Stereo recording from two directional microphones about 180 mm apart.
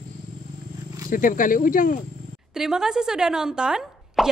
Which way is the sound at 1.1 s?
50° left (ahead or behind).